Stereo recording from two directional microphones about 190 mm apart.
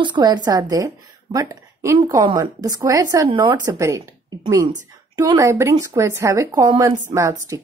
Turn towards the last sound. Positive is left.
turn(degrees=-15)  # may be behind; listen again after turning